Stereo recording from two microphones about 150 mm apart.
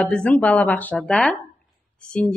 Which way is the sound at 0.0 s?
5° left (ahead or behind).